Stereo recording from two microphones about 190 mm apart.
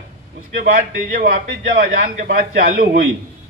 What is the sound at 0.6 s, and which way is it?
A man's voice, 45° right (ahead or behind).